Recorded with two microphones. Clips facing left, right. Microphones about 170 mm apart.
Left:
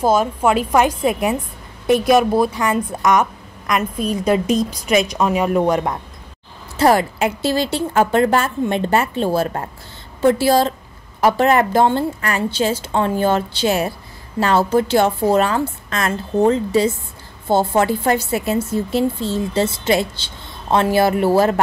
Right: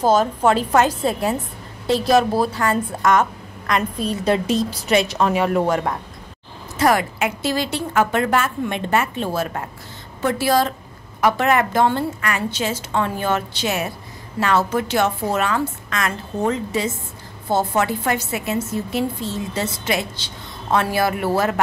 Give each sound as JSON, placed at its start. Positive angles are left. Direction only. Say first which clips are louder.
{"t": 0.0, "sound": "a woman's voice", "louder": "even", "side_deg": 10}
{"t": 2.4, "sound": "a woman's voice", "louder": "left 2 dB", "side_deg": 15}
{"t": 6.8, "sound": "a woman's voice", "louder": "left 3 dB", "side_deg": 30}